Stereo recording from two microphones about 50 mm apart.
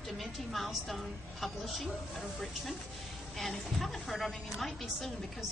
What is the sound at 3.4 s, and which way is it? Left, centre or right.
A woman's voice, centre.